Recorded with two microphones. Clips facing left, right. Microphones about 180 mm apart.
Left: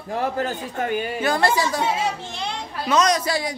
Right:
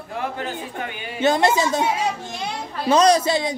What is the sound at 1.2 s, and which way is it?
A woman's voice, 20° right (ahead or behind).